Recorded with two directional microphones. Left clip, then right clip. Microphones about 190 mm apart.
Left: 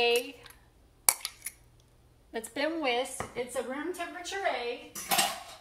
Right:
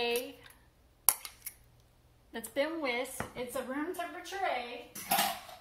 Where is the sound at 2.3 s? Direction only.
25° left (ahead or behind).